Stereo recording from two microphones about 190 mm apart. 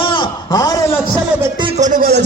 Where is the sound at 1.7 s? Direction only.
40° right (ahead or behind).